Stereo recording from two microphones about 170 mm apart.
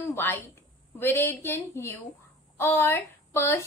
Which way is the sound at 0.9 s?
10° left (ahead or behind).